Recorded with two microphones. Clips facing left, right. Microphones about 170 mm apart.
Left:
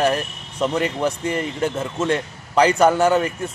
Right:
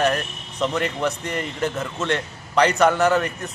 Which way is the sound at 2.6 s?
30° left (ahead or behind).